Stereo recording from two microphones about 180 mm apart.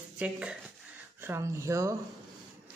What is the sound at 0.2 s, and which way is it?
Speech, 5° right (ahead or behind).